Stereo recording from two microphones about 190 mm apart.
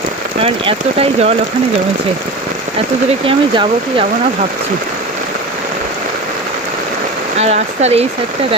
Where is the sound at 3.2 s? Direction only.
25° right (ahead or behind).